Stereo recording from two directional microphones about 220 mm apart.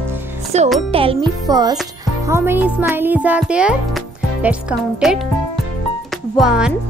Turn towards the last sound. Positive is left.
turn(degrees=-5)  # may be behind; listen again after turning